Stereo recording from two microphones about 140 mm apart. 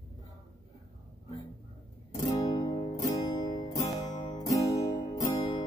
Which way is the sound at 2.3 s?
25° left (ahead or behind).